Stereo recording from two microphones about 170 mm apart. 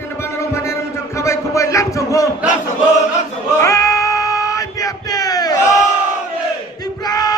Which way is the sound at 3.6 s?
15° left (ahead or behind).